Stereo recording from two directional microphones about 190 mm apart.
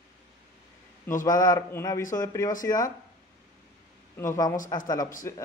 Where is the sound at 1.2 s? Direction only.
20° left (ahead or behind).